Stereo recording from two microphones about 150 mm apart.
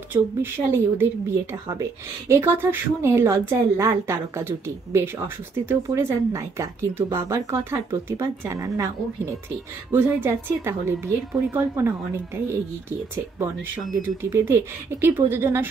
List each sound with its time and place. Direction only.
0.1 s speech: 15° right (ahead or behind)